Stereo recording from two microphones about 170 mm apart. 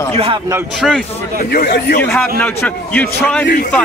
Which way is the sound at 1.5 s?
65° left (ahead or behind).